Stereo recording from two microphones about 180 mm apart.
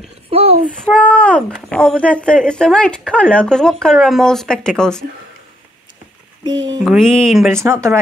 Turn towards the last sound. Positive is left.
turn(degrees=-15)  # may be behind; listen again after turning